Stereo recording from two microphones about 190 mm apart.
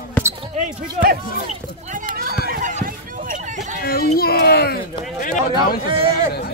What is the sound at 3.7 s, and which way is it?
A child's voice, 55° left (ahead or behind).